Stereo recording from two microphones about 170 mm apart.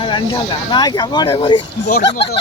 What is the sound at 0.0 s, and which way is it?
Speech, 30° left (ahead or behind).